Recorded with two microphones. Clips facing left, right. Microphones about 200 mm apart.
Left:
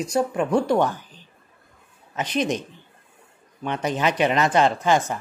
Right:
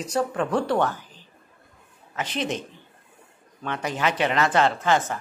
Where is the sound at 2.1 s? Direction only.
15° left (ahead or behind).